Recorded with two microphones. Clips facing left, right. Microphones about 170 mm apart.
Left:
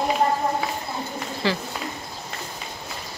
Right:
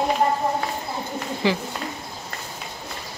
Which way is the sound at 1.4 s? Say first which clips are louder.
Right 3 dB; 15° right (ahead or behind).